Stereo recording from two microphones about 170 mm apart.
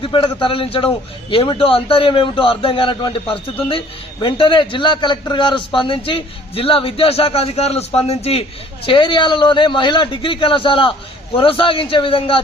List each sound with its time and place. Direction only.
0.0 s a man's voice: 30° left (ahead or behind)